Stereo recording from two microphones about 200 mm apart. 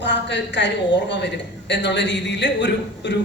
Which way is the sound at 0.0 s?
60° left (ahead or behind).